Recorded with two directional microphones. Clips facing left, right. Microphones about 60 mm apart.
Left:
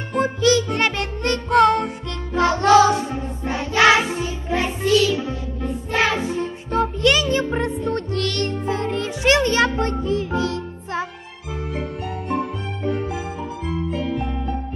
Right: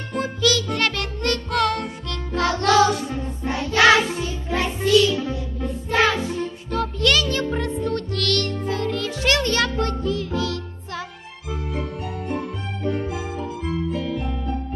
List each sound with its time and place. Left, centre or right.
0.1 s music: left
6.7 s music: left